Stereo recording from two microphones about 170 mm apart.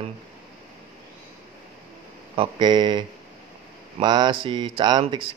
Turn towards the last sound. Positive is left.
turn(degrees=-25)  # may be behind; listen again after turning